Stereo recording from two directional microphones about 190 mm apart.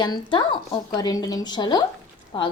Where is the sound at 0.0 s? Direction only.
25° left (ahead or behind).